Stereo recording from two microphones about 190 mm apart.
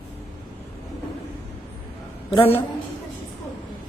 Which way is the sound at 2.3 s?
30° left (ahead or behind).